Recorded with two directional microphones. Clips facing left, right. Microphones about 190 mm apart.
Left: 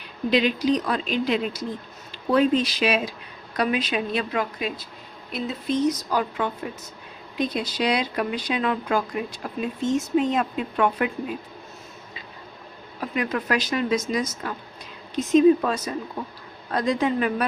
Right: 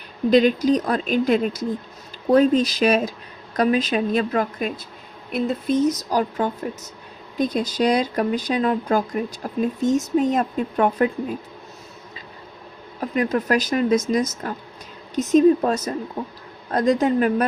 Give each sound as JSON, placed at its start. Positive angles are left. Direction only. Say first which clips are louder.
{"t": 0.3, "sound": "speech", "louder": "right 5 dB", "side_deg": -45}
{"t": 13.0, "sound": "speech", "louder": "right 5 dB", "side_deg": -40}